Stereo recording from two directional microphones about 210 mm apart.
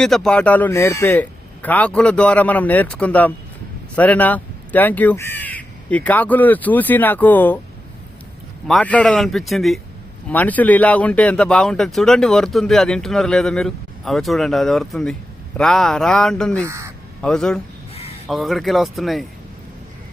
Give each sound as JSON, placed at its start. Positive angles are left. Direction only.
{"t": 0.0, "sound": "speech", "side_deg": 0}
{"t": 8.6, "sound": "speech", "side_deg": 5}
{"t": 16.6, "sound": "speech", "side_deg": -15}
{"t": 17.2, "sound": "speech", "side_deg": 5}
{"t": 17.9, "sound": "a sound", "side_deg": 30}
{"t": 18.3, "sound": "speech", "side_deg": 0}